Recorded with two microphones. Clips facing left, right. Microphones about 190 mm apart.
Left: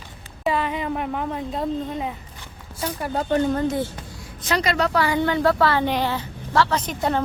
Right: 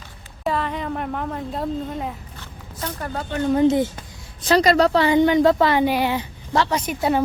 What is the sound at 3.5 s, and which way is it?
Speech, 20° right (ahead or behind).